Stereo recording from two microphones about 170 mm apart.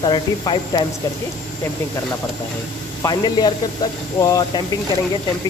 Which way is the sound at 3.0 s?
25° left (ahead or behind).